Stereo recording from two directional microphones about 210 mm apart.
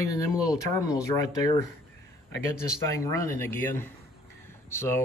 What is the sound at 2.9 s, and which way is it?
A man's voice, 15° left (ahead or behind).